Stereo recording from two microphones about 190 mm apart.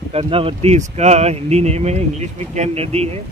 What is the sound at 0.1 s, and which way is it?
Speech, 30° right (ahead or behind).